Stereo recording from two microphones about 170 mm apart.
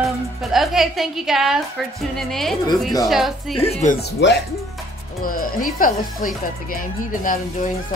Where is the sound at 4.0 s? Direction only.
90° left.